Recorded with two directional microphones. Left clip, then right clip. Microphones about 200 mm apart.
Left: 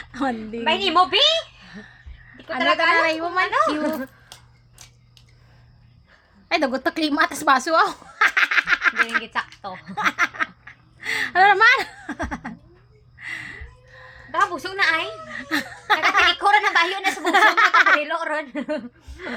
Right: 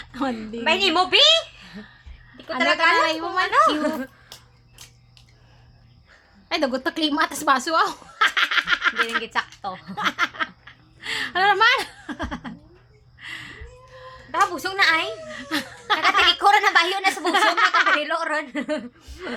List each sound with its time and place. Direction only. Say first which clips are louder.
0.0 s a sound: left 2 dB; 10° left (ahead or behind)
0.6 s a woman's voice: left 1 dB; 10° right (ahead or behind)
1.7 s speech: left 1 dB; 10° left (ahead or behind)
3.4 s a woman's voice: right 3 dB; 10° right (ahead or behind)
6.5 s a woman's voice: left 2 dB; 15° left (ahead or behind)
9.2 s a woman's voice: right 1 dB; 15° right (ahead or behind)
9.8 s snicker: left 3 dB; 10° left (ahead or behind)
13.1 s a sound: left 3 dB; 10° left (ahead or behind)
14.3 s a woman's voice: even; 10° right (ahead or behind)
15.3 s a sound: left 2 dB; 10° left (ahead or behind)
16.1 s speech: even; 10° left (ahead or behind)
16.4 s a woman's voice: right 1 dB; 15° right (ahead or behind)
17.2 s speech: left 4 dB; 15° left (ahead or behind)
18.0 s a woman's voice: right 1 dB; 5° right (ahead or behind)